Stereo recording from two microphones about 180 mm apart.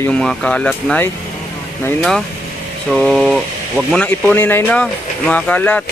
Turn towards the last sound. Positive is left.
turn(degrees=10)  # may be behind; listen again after turning